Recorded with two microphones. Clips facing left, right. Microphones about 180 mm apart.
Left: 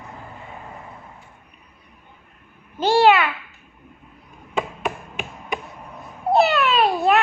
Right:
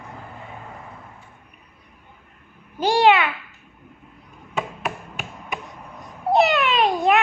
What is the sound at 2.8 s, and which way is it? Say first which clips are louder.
Babbling: left 1 dB; 15° right (ahead or behind).